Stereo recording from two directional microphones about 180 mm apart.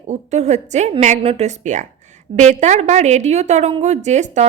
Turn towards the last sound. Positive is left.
turn(degrees=-40)  # may be behind; listen again after turning